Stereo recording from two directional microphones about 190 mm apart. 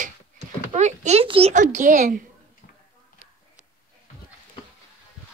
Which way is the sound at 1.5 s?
40° right (ahead or behind).